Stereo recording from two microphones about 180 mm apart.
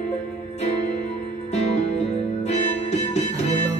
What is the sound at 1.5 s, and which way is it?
Music, 40° left (ahead or behind).